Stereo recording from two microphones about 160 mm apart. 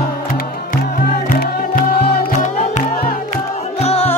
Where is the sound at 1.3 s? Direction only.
65° left (ahead or behind).